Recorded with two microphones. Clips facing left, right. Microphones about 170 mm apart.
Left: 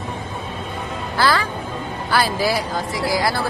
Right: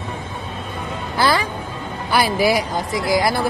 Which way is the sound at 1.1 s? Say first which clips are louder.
Right 1 dB; 15° right (ahead or behind).